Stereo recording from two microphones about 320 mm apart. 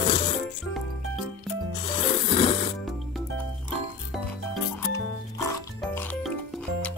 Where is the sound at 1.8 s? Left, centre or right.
Centre.